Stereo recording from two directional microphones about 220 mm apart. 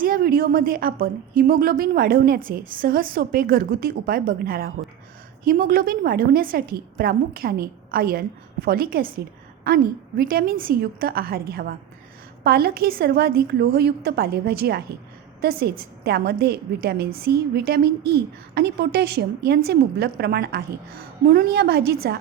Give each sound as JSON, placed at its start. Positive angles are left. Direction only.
{"t": 0.0, "sound": "a woman's voice", "side_deg": -40}